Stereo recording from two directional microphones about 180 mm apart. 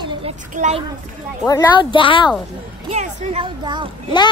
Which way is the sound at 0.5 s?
40° right (ahead or behind).